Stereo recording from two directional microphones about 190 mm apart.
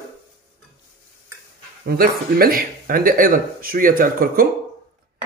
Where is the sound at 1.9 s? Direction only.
50° right (ahead or behind).